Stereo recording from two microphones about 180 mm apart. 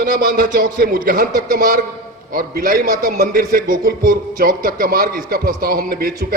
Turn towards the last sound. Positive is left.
turn(degrees=-55)  # may be behind; listen again after turning